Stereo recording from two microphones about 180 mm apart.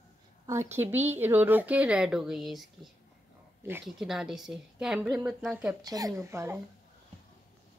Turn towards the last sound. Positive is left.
turn(degrees=-15)  # may be behind; listen again after turning